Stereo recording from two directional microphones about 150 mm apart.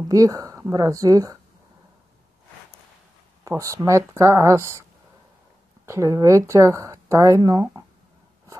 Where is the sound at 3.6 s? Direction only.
20° right (ahead or behind).